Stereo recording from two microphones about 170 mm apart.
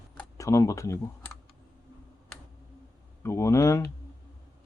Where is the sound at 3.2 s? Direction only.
15° left (ahead or behind).